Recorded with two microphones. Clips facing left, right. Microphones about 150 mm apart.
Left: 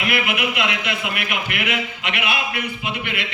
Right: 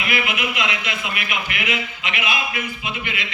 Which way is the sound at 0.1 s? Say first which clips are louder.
Even; 60° left (ahead or behind).